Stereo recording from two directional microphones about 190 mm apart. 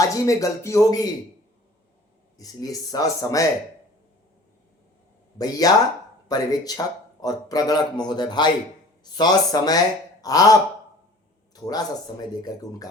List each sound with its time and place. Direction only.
0.0 s speech: 15° left (ahead or behind)
2.4 s a man's voice: 20° left (ahead or behind)
5.4 s a man's voice: 20° left (ahead or behind)